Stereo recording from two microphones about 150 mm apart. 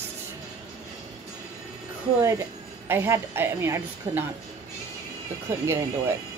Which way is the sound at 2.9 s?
15° right (ahead or behind).